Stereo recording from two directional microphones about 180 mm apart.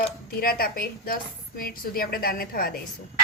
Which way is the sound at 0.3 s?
55° left (ahead or behind).